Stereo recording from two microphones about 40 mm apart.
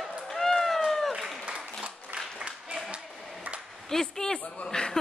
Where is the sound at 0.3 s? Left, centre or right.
Centre.